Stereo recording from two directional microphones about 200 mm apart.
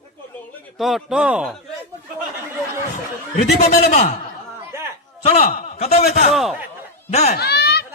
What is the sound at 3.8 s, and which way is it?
Speech, 45° left (ahead or behind).